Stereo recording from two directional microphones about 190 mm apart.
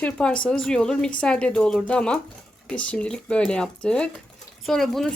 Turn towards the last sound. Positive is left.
turn(degrees=0)  # may be behind; listen again after turning